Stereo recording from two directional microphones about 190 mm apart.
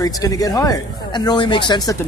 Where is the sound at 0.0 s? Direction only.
20° left (ahead or behind).